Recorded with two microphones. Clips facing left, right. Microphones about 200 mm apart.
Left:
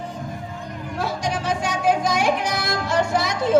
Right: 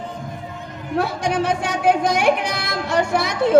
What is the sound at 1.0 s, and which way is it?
Speech, 60° right (ahead or behind).